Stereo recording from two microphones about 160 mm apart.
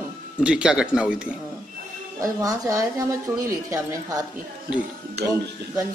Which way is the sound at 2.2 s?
20° right (ahead or behind).